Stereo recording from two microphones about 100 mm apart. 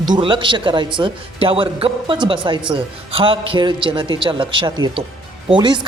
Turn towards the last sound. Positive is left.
turn(degrees=-55)  # may be behind; listen again after turning